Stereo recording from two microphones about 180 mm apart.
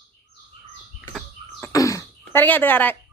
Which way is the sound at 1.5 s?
15° left (ahead or behind).